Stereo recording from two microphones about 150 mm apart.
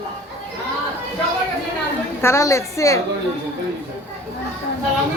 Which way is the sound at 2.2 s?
20° left (ahead or behind).